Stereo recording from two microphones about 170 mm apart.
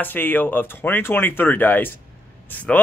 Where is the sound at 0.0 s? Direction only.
10° left (ahead or behind).